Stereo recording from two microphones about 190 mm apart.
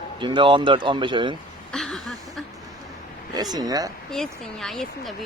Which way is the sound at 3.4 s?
20° right (ahead or behind).